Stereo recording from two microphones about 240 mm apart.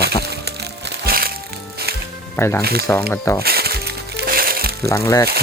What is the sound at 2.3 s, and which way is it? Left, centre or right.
Speech, centre.